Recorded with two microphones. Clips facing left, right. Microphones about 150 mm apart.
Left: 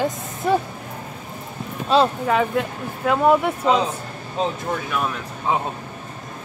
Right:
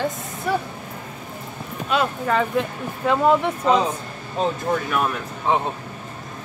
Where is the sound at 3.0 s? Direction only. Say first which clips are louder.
Left 1 dB; 5° left (ahead or behind).